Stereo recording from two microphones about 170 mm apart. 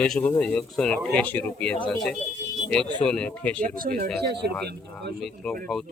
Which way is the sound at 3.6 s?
55° right (ahead or behind).